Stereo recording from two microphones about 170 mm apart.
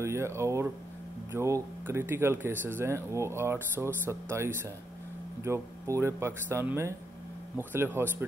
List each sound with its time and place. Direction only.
0.0 s speech: 15° right (ahead or behind)